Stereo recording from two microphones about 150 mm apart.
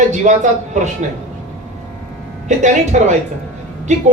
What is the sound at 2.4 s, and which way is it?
Speech, 55° right (ahead or behind).